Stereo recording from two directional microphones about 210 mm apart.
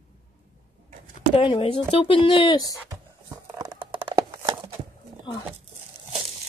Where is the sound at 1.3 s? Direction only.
25° left (ahead or behind).